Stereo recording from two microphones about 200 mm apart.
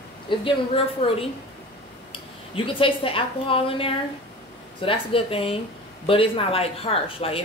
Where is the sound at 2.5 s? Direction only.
25° left (ahead or behind).